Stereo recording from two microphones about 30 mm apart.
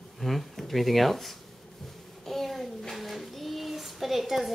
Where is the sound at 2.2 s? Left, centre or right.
Centre.